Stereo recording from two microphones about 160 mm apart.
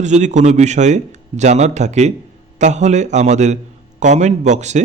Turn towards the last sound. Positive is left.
turn(degrees=-45)  # may be behind; listen again after turning